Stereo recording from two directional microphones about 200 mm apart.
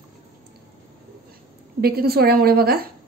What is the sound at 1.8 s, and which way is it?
A woman's voice, 50° right (ahead or behind).